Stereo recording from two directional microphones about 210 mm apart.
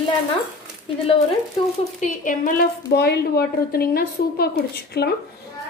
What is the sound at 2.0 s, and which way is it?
A woman's voice, 40° left (ahead or behind).